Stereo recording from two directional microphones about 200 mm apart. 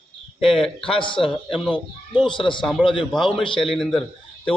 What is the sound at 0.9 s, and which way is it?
Speech, 25° left (ahead or behind).